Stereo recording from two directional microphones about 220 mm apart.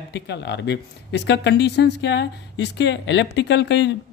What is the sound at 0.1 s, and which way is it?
Speech, 50° left (ahead or behind).